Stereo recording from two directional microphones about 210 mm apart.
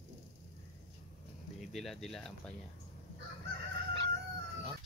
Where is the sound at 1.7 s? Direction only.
Centre (ahead or behind).